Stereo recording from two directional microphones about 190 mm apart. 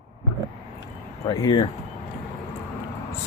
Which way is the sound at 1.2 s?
25° left (ahead or behind).